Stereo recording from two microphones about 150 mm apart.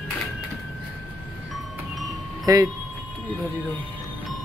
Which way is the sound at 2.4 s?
25° right (ahead or behind).